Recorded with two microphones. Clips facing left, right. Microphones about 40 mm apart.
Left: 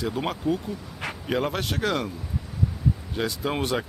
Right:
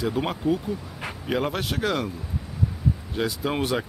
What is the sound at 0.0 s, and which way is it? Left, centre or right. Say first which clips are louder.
Speech: right 2 dB; centre.